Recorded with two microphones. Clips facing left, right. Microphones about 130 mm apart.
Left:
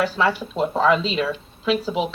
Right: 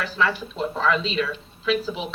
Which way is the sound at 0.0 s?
30° left (ahead or behind).